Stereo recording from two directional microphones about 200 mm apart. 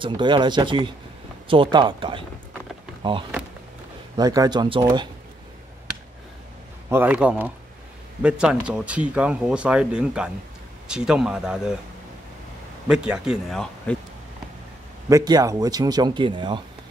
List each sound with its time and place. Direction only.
0.0 s speech: 25° right (ahead or behind)
6.9 s a man's voice: 10° right (ahead or behind)
12.8 s speech: 5° right (ahead or behind)
15.0 s speech: 20° right (ahead or behind)